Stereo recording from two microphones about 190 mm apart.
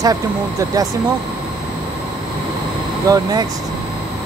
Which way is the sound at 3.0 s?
20° right (ahead or behind).